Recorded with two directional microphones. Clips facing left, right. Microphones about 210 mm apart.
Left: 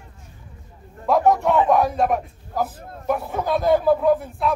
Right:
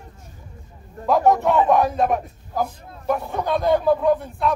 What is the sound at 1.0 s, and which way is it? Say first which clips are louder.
A man's voice: even; centre (ahead or behind).